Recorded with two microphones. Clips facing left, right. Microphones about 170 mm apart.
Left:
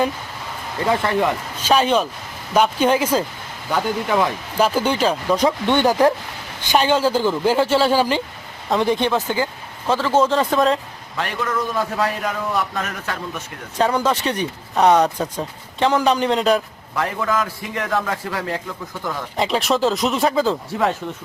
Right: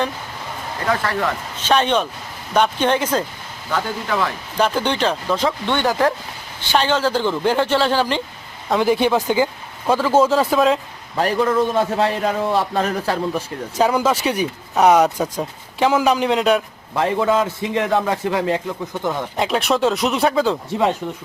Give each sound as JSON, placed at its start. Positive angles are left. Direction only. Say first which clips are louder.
{"t": 0.9, "sound": "speech", "louder": "left 2 dB", "side_deg": 20}
{"t": 4.5, "sound": "speech", "louder": "left 1 dB", "side_deg": 5}
{"t": 5.4, "sound": "speech", "louder": "left 3 dB", "side_deg": 20}
{"t": 8.7, "sound": "speech", "louder": "right 2 dB", "side_deg": -5}
{"t": 11.2, "sound": "a man's voice", "louder": "right 7 dB", "side_deg": -35}
{"t": 13.7, "sound": "speech", "louder": "right 1 dB", "side_deg": -10}
{"t": 16.9, "sound": "a man's voice", "louder": "right 4 dB", "side_deg": -25}
{"t": 19.4, "sound": "speech", "louder": "even", "side_deg": 0}